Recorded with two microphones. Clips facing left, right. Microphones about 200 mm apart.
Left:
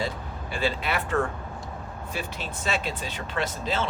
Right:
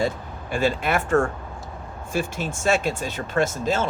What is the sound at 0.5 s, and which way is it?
Speech, 45° right (ahead or behind).